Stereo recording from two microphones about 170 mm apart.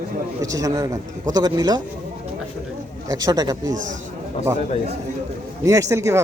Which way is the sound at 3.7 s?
50° right (ahead or behind).